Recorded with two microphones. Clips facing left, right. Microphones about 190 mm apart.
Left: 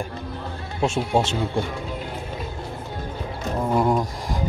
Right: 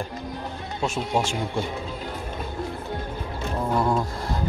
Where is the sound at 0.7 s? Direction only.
25° left (ahead or behind).